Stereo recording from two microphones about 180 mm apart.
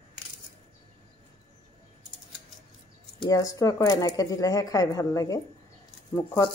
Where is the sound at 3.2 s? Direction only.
20° left (ahead or behind).